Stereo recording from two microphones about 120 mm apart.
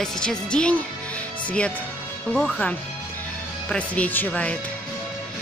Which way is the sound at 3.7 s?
10° left (ahead or behind).